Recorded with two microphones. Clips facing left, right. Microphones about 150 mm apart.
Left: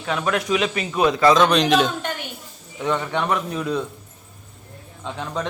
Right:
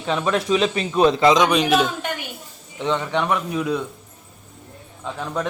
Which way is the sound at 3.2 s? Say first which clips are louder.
Right 1 dB; 10° right (ahead or behind).